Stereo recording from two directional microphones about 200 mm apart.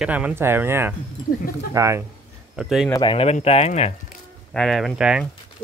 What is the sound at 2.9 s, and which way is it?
Speech, 25° left (ahead or behind).